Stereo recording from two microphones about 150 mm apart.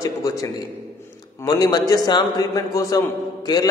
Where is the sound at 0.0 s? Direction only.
25° left (ahead or behind).